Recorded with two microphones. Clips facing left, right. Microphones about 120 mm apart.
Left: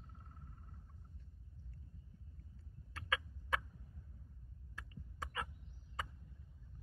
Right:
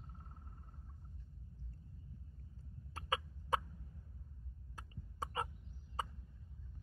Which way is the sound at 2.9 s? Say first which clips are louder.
Right 1 dB; 35° right (ahead or behind).